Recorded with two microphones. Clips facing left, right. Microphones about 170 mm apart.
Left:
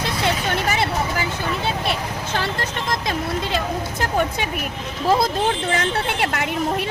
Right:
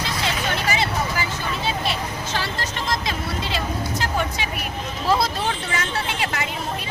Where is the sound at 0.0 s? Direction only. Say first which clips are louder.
Left 3 dB; 60° left (ahead or behind).